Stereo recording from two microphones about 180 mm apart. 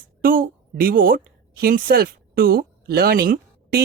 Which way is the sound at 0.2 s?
55° right (ahead or behind).